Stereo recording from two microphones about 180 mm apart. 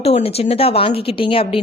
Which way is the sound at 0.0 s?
35° left (ahead or behind).